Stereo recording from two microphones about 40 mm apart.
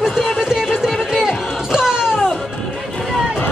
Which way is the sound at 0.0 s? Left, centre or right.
Centre.